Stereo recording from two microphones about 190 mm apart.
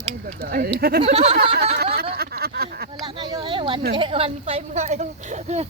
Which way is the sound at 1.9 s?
55° right (ahead or behind).